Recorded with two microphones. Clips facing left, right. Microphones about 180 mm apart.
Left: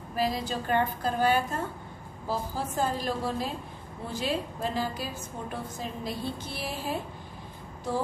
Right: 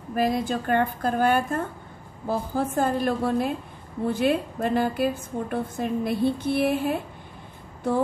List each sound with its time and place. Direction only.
0.1 s a woman's voice: 55° right (ahead or behind)